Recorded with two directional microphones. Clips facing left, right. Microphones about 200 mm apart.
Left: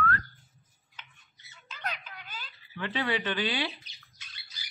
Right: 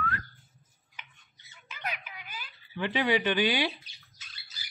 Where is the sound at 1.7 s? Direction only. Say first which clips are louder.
Even; 10° right (ahead or behind).